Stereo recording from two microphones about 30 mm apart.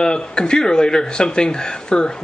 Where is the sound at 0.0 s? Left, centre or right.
Left.